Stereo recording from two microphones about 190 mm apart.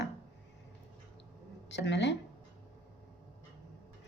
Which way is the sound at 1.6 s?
65° left (ahead or behind).